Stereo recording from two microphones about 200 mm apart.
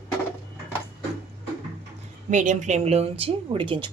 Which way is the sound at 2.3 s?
40° right (ahead or behind).